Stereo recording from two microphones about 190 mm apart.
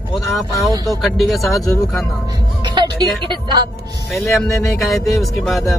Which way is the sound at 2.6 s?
25° right (ahead or behind).